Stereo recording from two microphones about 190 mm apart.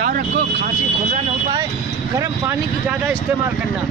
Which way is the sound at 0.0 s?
40° right (ahead or behind).